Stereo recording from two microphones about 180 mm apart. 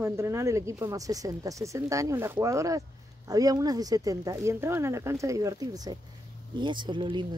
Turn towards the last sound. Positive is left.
turn(degrees=-25)  # may be behind; listen again after turning